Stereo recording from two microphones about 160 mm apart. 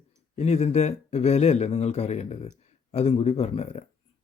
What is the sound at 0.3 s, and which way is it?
Speech, 40° left (ahead or behind).